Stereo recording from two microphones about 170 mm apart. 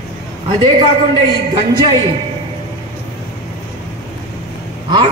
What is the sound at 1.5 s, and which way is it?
Speech, 30° right (ahead or behind).